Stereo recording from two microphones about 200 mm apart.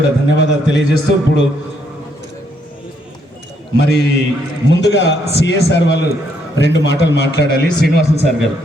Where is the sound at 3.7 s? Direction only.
55° left (ahead or behind).